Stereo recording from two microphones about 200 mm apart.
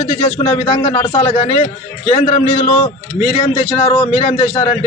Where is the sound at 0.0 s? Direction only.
35° left (ahead or behind).